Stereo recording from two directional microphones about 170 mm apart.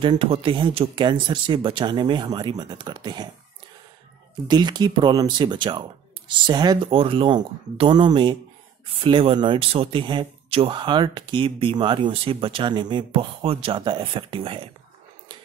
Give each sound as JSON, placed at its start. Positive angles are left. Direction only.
{"t": 0.0, "sound": "speech", "side_deg": -30}
{"t": 4.5, "sound": "speech", "side_deg": -25}